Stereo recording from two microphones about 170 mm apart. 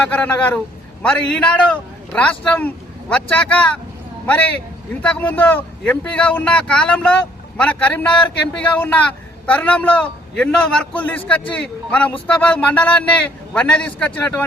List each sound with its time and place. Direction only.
0.1 s speech: 10° left (ahead or behind)